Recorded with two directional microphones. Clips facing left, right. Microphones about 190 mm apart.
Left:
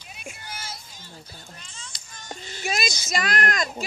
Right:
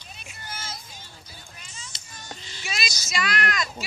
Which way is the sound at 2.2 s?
50° left (ahead or behind).